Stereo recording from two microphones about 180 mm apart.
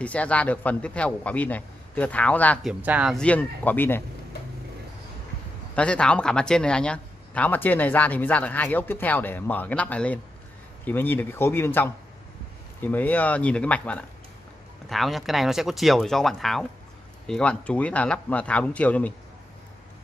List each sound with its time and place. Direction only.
0.0 s speech: 5° left (ahead or behind)
2.8 s speech: 5° right (ahead or behind)
3.2 s speech: 10° left (ahead or behind)
5.8 s speech: 5° left (ahead or behind)